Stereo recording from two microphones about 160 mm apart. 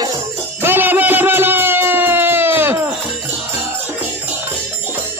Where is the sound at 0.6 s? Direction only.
15° right (ahead or behind).